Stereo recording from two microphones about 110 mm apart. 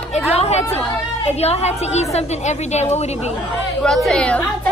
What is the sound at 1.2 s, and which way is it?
A woman's voice, 75° left (ahead or behind).